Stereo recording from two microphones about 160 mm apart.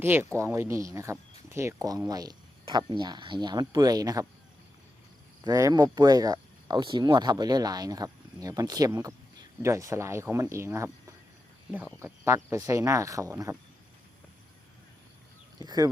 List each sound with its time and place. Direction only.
0.0 s speech: 15° right (ahead or behind)
5.4 s speech: 20° right (ahead or behind)
11.9 s speech: 15° right (ahead or behind)
15.5 s speech: 25° right (ahead or behind)